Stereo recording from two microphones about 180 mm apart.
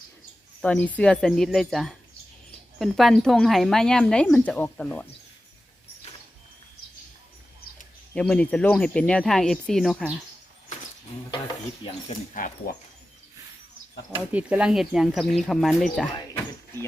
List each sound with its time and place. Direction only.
0.6 s speech: 5° left (ahead or behind)
8.1 s speech: 5° left (ahead or behind)
12.0 s speech: 45° left (ahead or behind)
14.3 s speech: 5° right (ahead or behind)
16.1 s a sound: 20° left (ahead or behind)